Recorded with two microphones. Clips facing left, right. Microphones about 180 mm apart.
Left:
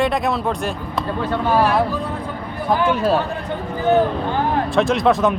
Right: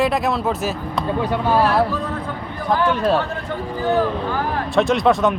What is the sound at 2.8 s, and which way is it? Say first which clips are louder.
Speech: even; 5° left (ahead or behind).